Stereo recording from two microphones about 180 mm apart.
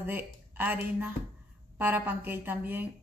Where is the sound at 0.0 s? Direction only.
10° right (ahead or behind).